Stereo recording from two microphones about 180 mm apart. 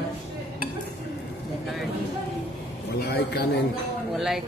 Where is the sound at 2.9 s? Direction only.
65° left (ahead or behind).